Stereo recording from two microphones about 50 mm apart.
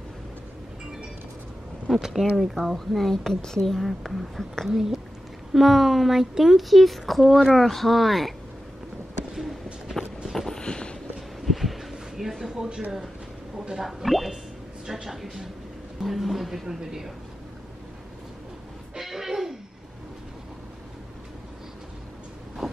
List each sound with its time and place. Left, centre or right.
2.0 s speech: centre
2.3 s speech: centre
3.8 s speech: centre
9.3 s a sound: centre
10.3 s vehicle: centre
10.6 s vehicle: centre
11.1 s a sound: centre
13.7 s speech: centre
18.9 s music: centre
22.6 s a sound: centre